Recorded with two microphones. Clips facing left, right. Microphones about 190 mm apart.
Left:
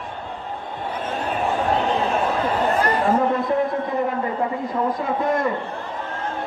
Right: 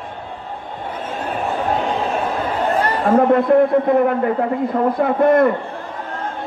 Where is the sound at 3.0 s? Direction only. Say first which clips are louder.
Right 11 dB; 60° right (ahead or behind).